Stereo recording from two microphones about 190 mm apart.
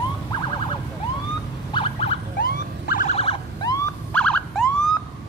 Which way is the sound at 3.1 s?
30° left (ahead or behind).